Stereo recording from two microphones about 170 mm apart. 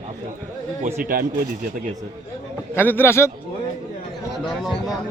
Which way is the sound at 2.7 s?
10° left (ahead or behind).